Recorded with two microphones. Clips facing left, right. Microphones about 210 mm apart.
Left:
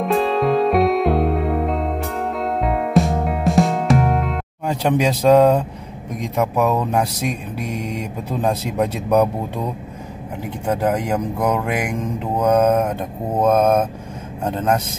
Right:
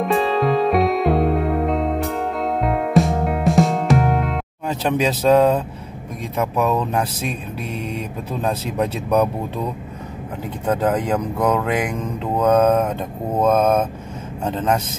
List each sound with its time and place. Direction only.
0.0 s music: centre (ahead or behind)
4.6 s mantra: 15° left (ahead or behind)
10.7 s mantra: 10° left (ahead or behind)